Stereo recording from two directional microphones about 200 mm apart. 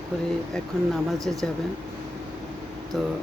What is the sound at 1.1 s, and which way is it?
Speech, centre (ahead or behind).